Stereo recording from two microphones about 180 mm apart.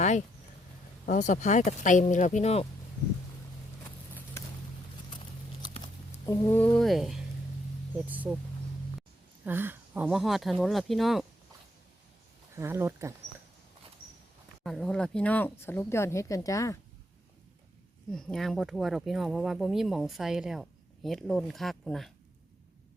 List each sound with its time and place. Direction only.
1.0 s speech: 45° left (ahead or behind)
6.2 s speech: 15° left (ahead or behind); by 11.3 s centre (ahead or behind)
12.5 s speech: 15° right (ahead or behind)
14.6 s speech: centre (ahead or behind); by 16.7 s 20° left (ahead or behind)
18.1 s speech: 5° left (ahead or behind)